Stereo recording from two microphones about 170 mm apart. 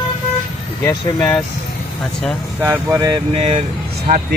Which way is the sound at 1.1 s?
5° left (ahead or behind).